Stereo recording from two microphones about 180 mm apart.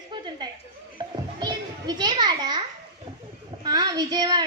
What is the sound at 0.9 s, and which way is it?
Children playing, 25° right (ahead or behind).